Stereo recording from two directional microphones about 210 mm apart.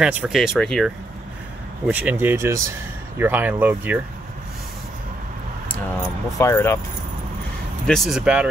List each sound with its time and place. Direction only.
0.0 s speech: 5° right (ahead or behind)
1.9 s speech: 5° right (ahead or behind)
6.3 s speech: 15° left (ahead or behind)
7.8 s speech: centre (ahead or behind)